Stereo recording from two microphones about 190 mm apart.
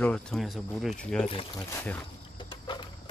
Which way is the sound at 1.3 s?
25° left (ahead or behind).